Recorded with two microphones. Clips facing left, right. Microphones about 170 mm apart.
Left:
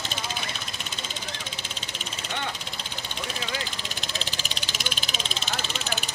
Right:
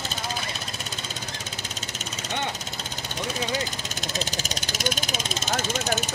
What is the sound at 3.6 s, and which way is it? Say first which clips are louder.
Vehicle: right 4 dB; 45° right (ahead or behind).